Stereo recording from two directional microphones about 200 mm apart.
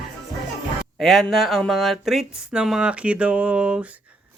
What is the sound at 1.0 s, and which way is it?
Speech, centre (ahead or behind).